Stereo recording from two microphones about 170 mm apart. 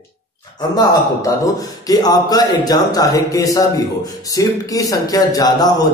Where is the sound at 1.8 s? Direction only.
25° left (ahead or behind).